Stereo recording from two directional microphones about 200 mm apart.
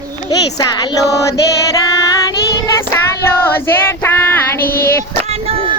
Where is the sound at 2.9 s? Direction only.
10° left (ahead or behind).